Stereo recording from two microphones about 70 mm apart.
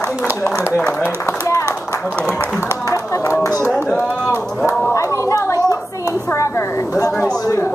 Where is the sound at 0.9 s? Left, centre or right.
Left.